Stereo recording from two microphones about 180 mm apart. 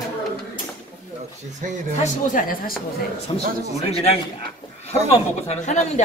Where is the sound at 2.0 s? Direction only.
50° left (ahead or behind).